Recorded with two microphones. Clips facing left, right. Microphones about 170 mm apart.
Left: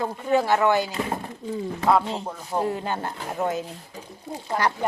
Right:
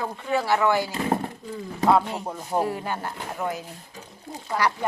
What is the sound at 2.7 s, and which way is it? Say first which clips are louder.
Speech: left 2 dB; 25° left (ahead or behind).